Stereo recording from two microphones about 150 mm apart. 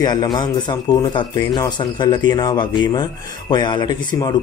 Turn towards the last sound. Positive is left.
turn(degrees=30)  # may be behind; listen again after turning